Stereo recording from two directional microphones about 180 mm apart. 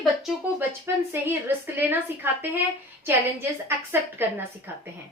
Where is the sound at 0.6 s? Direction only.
15° right (ahead or behind).